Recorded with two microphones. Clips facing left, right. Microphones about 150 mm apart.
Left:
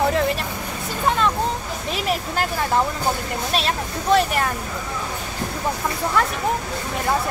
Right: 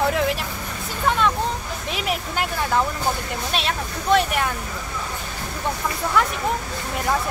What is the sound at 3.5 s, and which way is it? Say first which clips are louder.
Speech: left 2 dB; centre (ahead or behind).